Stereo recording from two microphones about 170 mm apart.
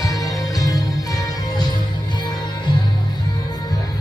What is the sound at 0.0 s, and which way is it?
Music, 20° left (ahead or behind).